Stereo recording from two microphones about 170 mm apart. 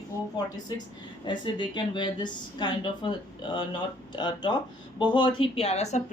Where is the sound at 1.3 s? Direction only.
25° left (ahead or behind).